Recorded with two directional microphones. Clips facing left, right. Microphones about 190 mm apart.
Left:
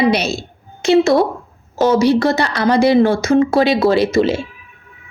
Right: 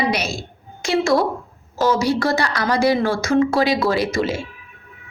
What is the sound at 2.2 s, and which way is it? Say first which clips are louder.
A woman's voice: left 5 dB; 20° left (ahead or behind).